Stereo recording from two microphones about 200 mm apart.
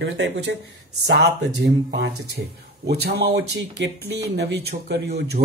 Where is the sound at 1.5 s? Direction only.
55° right (ahead or behind).